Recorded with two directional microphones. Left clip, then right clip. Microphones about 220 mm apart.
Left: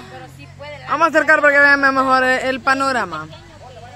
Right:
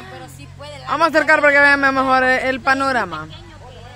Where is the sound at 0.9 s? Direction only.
Centre (ahead or behind).